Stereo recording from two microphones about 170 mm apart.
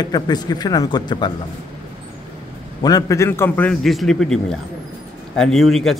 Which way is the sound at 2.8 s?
20° left (ahead or behind).